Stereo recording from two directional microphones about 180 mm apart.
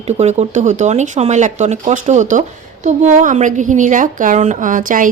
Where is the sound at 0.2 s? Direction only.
40° right (ahead or behind).